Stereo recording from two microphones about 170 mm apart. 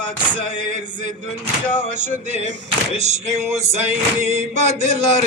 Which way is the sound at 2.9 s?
40° right (ahead or behind).